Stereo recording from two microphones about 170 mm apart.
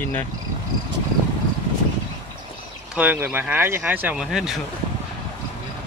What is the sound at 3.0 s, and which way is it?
Speech, 10° right (ahead or behind).